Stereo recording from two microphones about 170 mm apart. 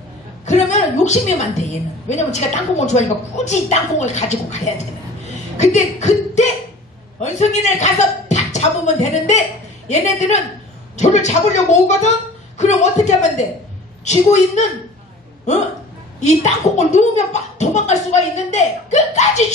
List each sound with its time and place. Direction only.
0.5 s a woman's voice: 45° left (ahead or behind)
16.2 s speech: 45° left (ahead or behind)